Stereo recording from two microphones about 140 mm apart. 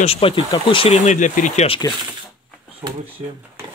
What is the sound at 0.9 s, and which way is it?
Speech, 60° left (ahead or behind).